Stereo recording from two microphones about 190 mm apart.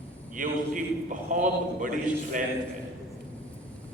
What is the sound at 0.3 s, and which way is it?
Speech, 45° right (ahead or behind).